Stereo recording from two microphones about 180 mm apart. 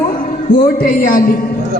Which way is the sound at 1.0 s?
50° left (ahead or behind).